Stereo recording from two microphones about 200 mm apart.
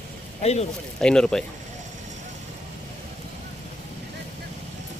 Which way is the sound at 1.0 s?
5° left (ahead or behind).